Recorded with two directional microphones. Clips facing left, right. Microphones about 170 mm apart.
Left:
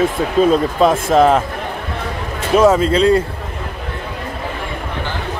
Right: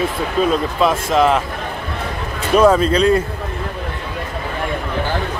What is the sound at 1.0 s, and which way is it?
Speech, 45° left (ahead or behind).